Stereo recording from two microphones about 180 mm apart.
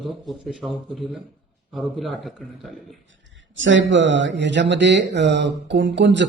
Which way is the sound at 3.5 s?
90° right.